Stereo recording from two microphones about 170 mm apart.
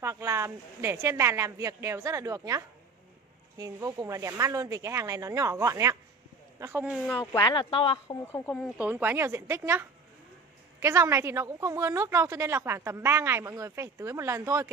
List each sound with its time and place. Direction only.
0.0 s a woman's voice: 15° right (ahead or behind)
7.3 s speech: 25° left (ahead or behind)
8.3 s speech: 10° left (ahead or behind)
8.7 s a woman's voice: 10° right (ahead or behind)